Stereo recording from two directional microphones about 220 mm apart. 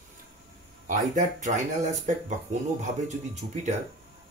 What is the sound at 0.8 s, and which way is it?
Speech, 35° right (ahead or behind).